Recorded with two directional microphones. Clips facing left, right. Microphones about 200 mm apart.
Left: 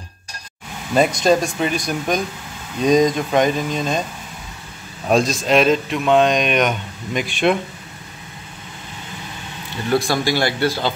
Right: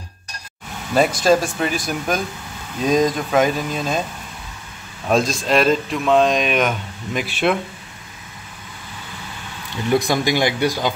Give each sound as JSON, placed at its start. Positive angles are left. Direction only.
{"t": 0.9, "sound": "speech", "side_deg": 0}
{"t": 5.0, "sound": "speech", "side_deg": 0}
{"t": 9.8, "sound": "speech", "side_deg": -20}